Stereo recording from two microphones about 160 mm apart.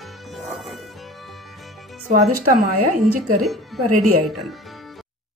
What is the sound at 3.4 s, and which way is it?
Speech, centre (ahead or behind).